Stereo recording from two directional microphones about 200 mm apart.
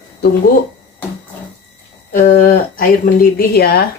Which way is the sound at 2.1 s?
45° left (ahead or behind).